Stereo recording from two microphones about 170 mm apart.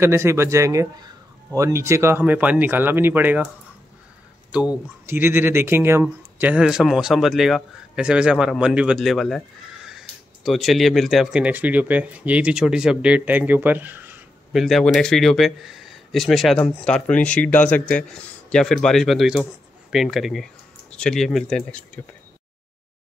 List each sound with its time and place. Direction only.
0.0 s speech: 15° right (ahead or behind)
4.5 s speech: 5° right (ahead or behind)
14.6 s speech: centre (ahead or behind)